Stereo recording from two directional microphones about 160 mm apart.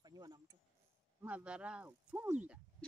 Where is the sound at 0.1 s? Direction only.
25° right (ahead or behind).